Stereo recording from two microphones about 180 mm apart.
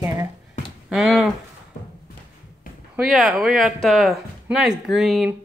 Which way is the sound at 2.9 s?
Centre (ahead or behind).